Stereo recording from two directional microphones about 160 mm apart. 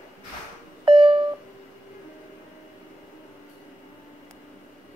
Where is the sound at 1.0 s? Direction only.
35° right (ahead or behind).